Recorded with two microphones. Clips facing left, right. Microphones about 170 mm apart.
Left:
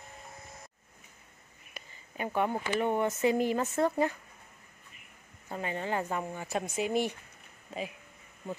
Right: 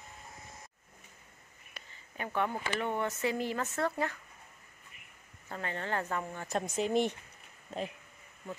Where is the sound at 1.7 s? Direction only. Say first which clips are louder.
Left 4 dB; 10° left (ahead or behind).